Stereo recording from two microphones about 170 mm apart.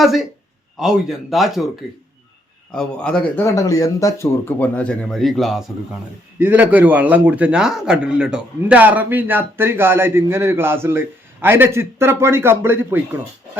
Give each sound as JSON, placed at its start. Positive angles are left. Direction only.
{"t": 0.0, "sound": "speech", "side_deg": 0}
{"t": 2.7, "sound": "speech", "side_deg": 5}
{"t": 3.4, "sound": "speech", "side_deg": 20}